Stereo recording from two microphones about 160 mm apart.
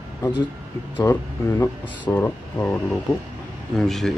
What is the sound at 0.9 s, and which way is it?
Speech, 15° left (ahead or behind).